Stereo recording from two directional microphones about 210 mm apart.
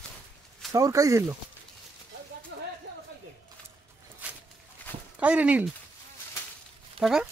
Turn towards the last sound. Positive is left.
turn(degrees=0)  # may be behind; listen again after turning